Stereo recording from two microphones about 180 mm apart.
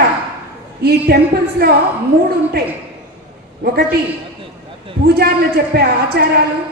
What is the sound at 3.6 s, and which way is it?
Speech, 60° right (ahead or behind).